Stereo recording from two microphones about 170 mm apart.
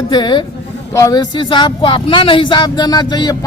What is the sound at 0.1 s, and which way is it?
Speech, 25° left (ahead or behind).